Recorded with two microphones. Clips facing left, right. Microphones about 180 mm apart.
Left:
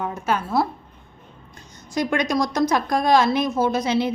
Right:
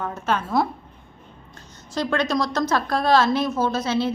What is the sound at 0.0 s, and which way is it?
Speech, 10° left (ahead or behind).